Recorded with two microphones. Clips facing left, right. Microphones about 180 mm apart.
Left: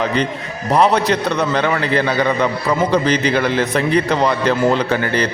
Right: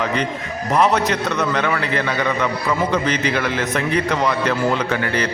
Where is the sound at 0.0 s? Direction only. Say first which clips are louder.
Left 3 dB; 30° left (ahead or behind).